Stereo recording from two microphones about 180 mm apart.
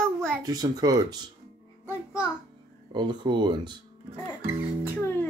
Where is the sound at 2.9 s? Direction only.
25° right (ahead or behind).